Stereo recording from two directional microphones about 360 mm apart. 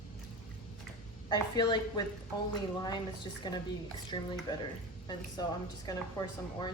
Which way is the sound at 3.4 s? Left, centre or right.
Centre.